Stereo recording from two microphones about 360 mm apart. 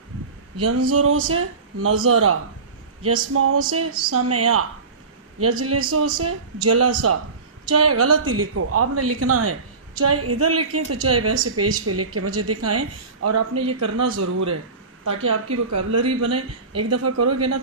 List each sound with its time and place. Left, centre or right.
0.6 s a woman's voice: right
3.3 s a woman's voice: right
15.0 s a woman's voice: right